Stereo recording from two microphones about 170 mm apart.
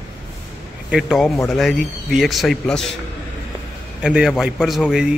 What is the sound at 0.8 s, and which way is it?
A man's voice, 5° right (ahead or behind).